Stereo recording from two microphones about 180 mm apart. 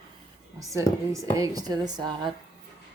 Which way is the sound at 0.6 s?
15° right (ahead or behind).